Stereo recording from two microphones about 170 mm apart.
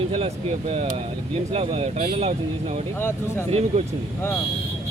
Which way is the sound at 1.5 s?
35° right (ahead or behind).